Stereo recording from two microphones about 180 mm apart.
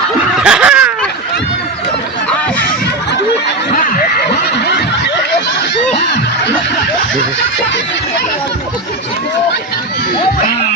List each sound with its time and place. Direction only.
0.3 s snicker: 5° right (ahead or behind)
3.7 s a sound: 50° left (ahead or behind)
4.5 s snicker: 75° left (ahead or behind)